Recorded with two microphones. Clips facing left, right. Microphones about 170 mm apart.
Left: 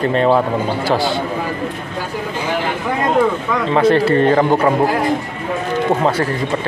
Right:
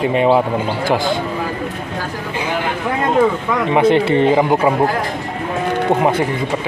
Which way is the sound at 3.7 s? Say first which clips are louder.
Even; 15° right (ahead or behind).